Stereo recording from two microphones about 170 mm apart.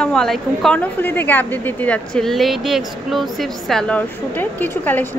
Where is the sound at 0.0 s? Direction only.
5° left (ahead or behind).